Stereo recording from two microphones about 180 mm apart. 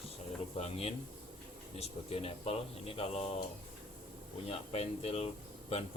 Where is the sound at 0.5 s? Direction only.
35° left (ahead or behind).